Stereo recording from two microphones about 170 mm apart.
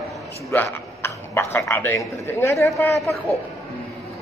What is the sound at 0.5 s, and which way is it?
A man's voice, 15° left (ahead or behind).